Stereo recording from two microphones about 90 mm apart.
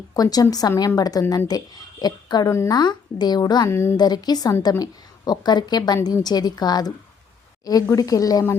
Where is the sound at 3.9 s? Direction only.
50° left (ahead or behind).